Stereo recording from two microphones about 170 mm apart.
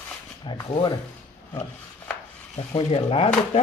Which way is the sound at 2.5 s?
30° left (ahead or behind).